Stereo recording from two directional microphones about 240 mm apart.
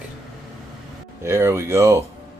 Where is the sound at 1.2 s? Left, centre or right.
Centre.